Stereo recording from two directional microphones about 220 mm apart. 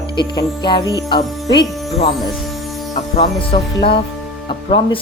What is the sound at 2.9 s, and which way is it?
Speech, 25° left (ahead or behind).